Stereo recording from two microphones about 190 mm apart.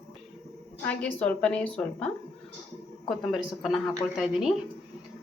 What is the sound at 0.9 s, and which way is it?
A woman's voice, 5° left (ahead or behind).